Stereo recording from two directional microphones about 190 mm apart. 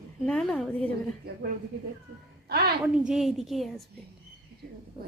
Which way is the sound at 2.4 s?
55° right (ahead or behind).